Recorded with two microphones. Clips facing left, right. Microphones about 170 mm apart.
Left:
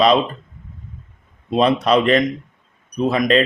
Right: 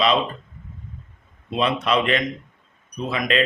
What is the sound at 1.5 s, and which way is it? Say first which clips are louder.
Speech: left 6 dB; 40° left (ahead or behind).